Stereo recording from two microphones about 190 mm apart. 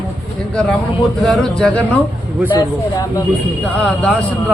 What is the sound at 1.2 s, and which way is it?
Speech, centre (ahead or behind).